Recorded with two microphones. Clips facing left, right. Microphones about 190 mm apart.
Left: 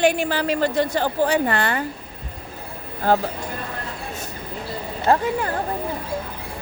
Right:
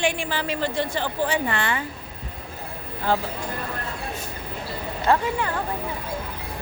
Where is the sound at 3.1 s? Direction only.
45° left (ahead or behind).